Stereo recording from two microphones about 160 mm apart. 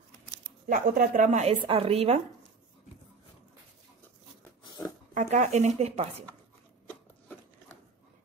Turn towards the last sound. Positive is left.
turn(degrees=10)  # may be behind; listen again after turning